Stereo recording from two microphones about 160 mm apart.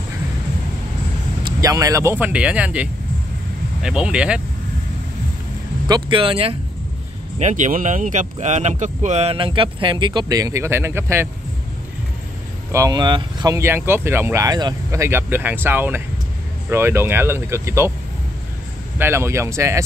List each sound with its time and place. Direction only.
1.4 s speech: 20° right (ahead or behind)
5.9 s speech: 30° right (ahead or behind)
7.3 s speech: 50° right (ahead or behind); by 11.2 s 15° right (ahead or behind)
12.7 s speech: 25° right (ahead or behind)
18.9 s speech: 15° right (ahead or behind)